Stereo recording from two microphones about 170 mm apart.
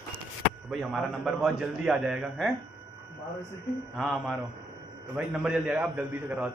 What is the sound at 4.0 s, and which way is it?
A man's voice, centre (ahead or behind).